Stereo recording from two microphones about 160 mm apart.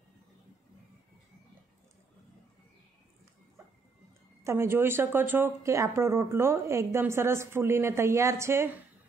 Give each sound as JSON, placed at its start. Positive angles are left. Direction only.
{"t": 4.4, "sound": "speech", "side_deg": -15}